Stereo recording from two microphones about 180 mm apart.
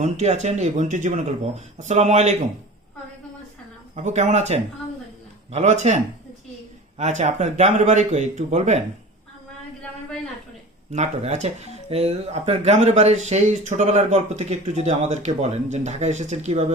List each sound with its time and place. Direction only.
0.0 s speech: 40° right (ahead or behind)
3.9 s speech: 40° right (ahead or behind)
7.0 s speech: 40° right (ahead or behind)
10.9 s speech: 40° right (ahead or behind)